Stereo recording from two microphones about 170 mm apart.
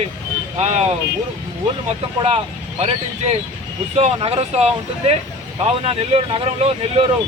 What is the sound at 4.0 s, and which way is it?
Speech, 35° right (ahead or behind).